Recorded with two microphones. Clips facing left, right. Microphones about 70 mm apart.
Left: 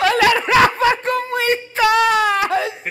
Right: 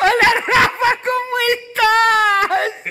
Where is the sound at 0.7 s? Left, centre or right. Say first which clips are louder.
Even; right.